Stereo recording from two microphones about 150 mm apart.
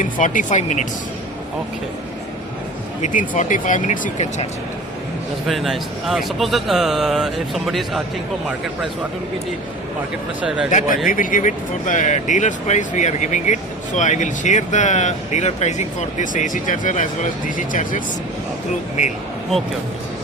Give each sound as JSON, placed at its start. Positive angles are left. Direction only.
{"t": 0.0, "sound": "speech", "side_deg": 60}
{"t": 3.0, "sound": "speech", "side_deg": 55}
{"t": 5.5, "sound": "speech", "side_deg": 0}
{"t": 10.7, "sound": "speech", "side_deg": 60}